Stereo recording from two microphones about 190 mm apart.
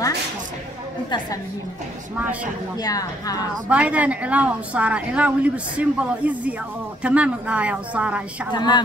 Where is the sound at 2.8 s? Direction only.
20° left (ahead or behind).